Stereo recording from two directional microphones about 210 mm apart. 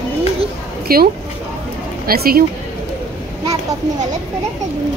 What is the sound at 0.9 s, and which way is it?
Speech, 45° right (ahead or behind).